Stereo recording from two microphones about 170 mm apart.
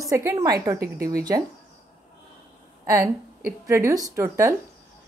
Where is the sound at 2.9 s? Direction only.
20° right (ahead or behind).